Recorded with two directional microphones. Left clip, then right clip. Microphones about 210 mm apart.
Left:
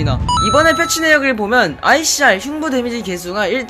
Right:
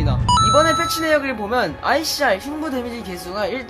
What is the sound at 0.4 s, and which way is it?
Speech, 15° left (ahead or behind).